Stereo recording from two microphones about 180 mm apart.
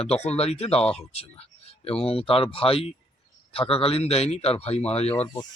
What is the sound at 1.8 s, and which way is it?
Speech, 30° left (ahead or behind).